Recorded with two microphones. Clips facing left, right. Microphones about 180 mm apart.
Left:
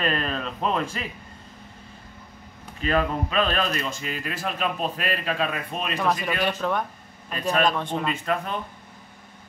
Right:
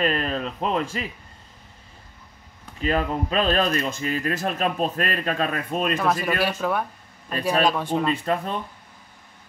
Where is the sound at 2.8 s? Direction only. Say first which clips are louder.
Even; 35° right (ahead or behind).